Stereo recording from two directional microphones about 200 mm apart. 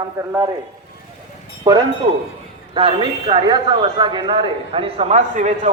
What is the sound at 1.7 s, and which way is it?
A man's voice, 20° right (ahead or behind).